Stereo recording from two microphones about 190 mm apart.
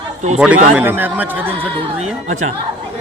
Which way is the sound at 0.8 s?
10° right (ahead or behind).